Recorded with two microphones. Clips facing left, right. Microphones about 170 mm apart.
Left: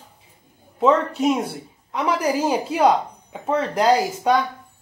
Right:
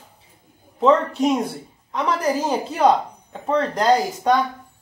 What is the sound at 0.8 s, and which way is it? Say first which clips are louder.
Speech: right 1 dB; 5° left (ahead or behind).